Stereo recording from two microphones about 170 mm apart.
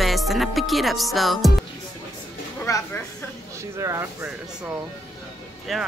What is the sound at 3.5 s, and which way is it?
Speech, 15° right (ahead or behind).